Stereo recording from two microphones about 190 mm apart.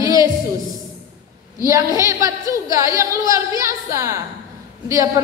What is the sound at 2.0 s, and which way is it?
A woman's voice, 15° right (ahead or behind).